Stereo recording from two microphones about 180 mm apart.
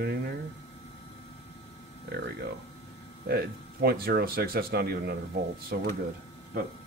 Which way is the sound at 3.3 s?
60° right (ahead or behind).